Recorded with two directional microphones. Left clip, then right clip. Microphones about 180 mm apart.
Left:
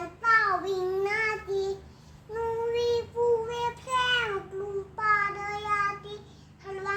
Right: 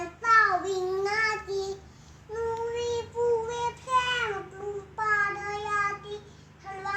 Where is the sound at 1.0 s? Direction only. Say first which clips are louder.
Right 1 dB; centre (ahead or behind).